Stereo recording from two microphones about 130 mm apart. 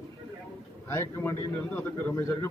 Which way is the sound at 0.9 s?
20° left (ahead or behind).